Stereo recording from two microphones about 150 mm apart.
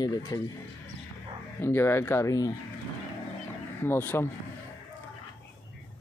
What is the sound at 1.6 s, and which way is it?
Speech, 15° left (ahead or behind).